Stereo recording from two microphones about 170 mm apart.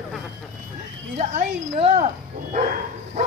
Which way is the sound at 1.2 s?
45° right (ahead or behind).